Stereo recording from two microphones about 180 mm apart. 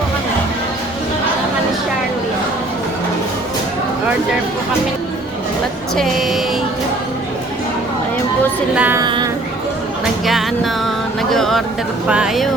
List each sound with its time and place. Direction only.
6.0 s speech: centre (ahead or behind)
8.7 s a woman's voice: 10° right (ahead or behind)
9.0 s a woman's voice: 20° right (ahead or behind)
10.2 s music: centre (ahead or behind)
12.0 s speech: 5° right (ahead or behind)